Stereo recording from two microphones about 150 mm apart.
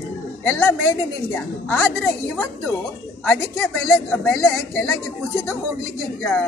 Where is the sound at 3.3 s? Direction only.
15° left (ahead or behind).